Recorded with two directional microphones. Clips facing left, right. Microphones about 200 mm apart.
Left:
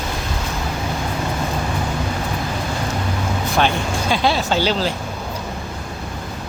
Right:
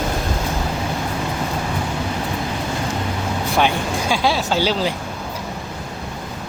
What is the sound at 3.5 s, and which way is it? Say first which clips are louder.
Speech: even; 10° right (ahead or behind).